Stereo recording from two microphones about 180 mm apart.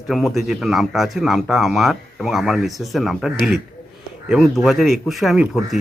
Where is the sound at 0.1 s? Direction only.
Centre (ahead or behind).